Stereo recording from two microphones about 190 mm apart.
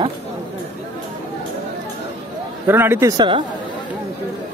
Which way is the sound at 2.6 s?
10° right (ahead or behind).